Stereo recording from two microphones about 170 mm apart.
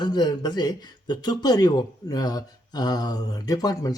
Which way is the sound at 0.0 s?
25° left (ahead or behind).